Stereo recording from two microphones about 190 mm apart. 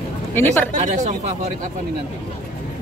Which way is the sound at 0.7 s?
40° right (ahead or behind).